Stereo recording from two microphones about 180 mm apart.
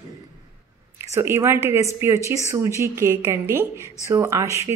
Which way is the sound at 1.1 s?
15° right (ahead or behind).